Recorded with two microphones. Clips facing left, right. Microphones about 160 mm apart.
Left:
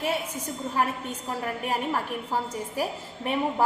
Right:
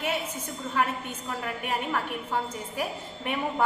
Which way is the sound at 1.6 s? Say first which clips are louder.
Left 1 dB; 35° left (ahead or behind).